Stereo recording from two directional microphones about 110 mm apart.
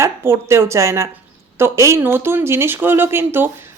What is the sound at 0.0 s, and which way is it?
Speech, 25° right (ahead or behind).